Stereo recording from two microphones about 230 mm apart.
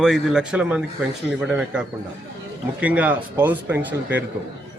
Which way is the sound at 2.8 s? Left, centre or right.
Centre.